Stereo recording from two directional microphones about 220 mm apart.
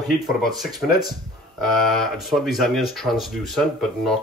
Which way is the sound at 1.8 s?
Centre (ahead or behind).